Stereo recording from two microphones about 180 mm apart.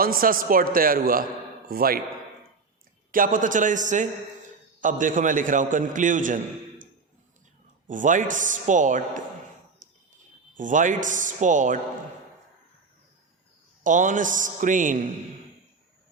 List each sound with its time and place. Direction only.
0.0 s a man's voice: 55° right (ahead or behind)
3.1 s a man's voice: 50° right (ahead or behind)
7.9 s a man's voice: 45° right (ahead or behind)
9.8 s a sound: 45° right (ahead or behind)
10.6 s a man's voice: 45° right (ahead or behind)
13.8 s a man's voice: 45° right (ahead or behind)